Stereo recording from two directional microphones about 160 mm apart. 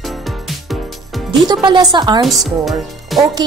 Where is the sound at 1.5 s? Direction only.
30° right (ahead or behind).